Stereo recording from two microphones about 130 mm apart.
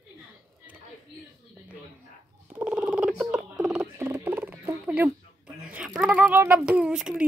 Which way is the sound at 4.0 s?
15° right (ahead or behind).